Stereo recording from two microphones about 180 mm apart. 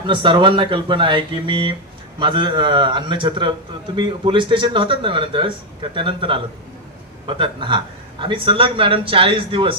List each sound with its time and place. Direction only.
0.0 s a man's voice: 25° right (ahead or behind)